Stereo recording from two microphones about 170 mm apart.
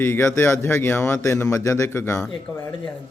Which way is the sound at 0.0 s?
15° left (ahead or behind).